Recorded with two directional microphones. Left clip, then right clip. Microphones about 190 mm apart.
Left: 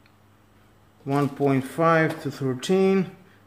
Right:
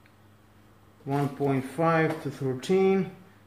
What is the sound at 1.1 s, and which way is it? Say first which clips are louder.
Speech: left 5 dB; 45° left (ahead or behind).